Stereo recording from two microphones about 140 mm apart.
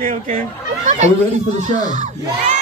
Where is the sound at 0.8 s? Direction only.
55° right (ahead or behind).